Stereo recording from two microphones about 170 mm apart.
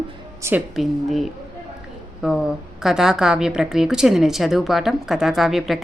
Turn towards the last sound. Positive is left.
turn(degrees=0)  # may be behind; listen again after turning